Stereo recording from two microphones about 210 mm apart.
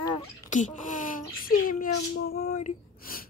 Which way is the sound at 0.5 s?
35° left (ahead or behind).